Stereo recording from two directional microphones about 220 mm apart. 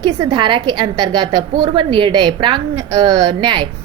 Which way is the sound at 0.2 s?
20° right (ahead or behind).